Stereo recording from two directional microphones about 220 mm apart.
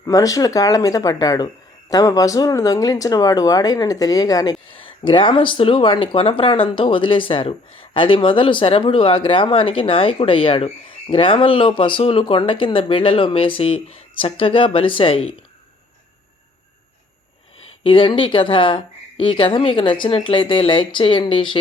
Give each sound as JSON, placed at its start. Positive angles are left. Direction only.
{"t": 0.0, "sound": "speech", "side_deg": 15}
{"t": 17.8, "sound": "speech", "side_deg": 25}